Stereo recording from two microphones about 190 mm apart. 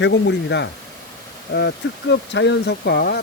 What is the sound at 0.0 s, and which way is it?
Speech, 70° left (ahead or behind).